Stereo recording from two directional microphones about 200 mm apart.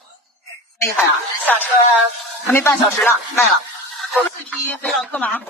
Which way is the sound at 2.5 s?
10° left (ahead or behind).